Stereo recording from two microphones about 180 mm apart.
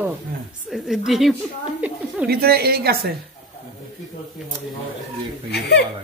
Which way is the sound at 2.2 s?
60° right (ahead or behind).